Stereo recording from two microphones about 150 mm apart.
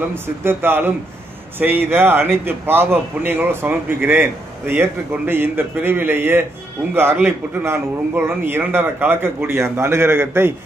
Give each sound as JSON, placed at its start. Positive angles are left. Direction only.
{"t": 0.1, "sound": "a man's voice", "side_deg": -15}